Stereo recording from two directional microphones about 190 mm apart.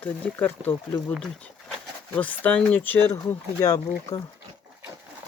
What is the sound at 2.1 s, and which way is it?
Speech, 10° left (ahead or behind).